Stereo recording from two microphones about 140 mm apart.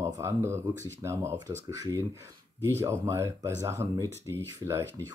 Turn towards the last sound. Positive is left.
turn(degrees=-20)  # may be behind; listen again after turning